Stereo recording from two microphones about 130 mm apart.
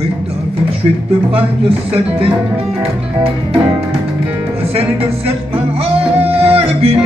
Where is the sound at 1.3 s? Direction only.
50° right (ahead or behind).